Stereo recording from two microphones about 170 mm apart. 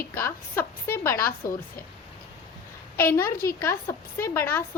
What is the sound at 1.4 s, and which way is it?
Speech, 55° left (ahead or behind).